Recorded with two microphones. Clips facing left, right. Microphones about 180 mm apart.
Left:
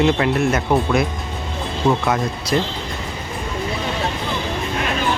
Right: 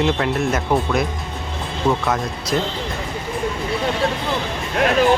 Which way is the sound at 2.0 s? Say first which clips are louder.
Left 1 dB; 5° left (ahead or behind).